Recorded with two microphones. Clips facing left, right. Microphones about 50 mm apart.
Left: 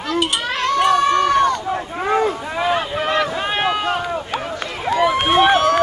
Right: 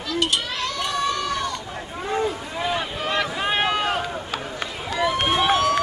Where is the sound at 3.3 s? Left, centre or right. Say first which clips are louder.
Left 2 dB; centre.